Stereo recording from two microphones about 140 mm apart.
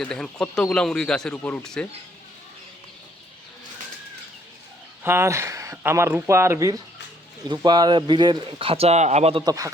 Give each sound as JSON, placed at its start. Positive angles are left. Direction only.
{"t": 0.0, "sound": "speech", "side_deg": 5}
{"t": 5.0, "sound": "speech", "side_deg": -20}
{"t": 7.4, "sound": "speech", "side_deg": -30}